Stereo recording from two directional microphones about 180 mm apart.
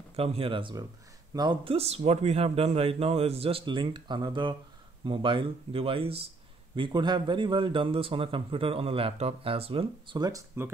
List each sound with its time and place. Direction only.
0.1 s speech: 35° right (ahead or behind); by 10.7 s 15° right (ahead or behind)